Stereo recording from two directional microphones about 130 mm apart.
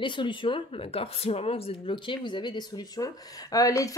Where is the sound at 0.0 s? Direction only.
40° left (ahead or behind).